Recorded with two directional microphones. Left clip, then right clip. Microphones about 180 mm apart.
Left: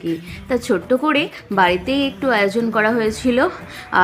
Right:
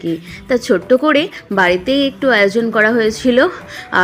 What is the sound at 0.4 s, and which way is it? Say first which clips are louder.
A woman's voice: right 5 dB; 20° right (ahead or behind).